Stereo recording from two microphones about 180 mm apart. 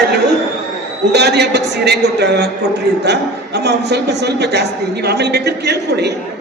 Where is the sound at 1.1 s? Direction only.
65° right (ahead or behind).